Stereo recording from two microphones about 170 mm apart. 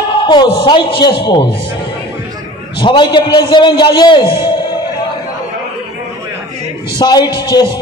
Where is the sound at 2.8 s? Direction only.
25° left (ahead or behind).